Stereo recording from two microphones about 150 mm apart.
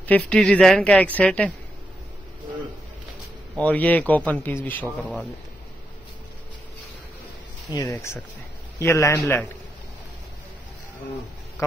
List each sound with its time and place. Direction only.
0.0 s speech: 10° left (ahead or behind)
3.6 s speech: 10° left (ahead or behind)
7.9 s a man's voice: 15° left (ahead or behind)